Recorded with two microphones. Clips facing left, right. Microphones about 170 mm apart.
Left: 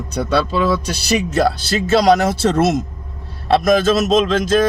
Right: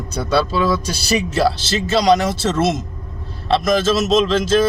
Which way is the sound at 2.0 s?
55° left (ahead or behind).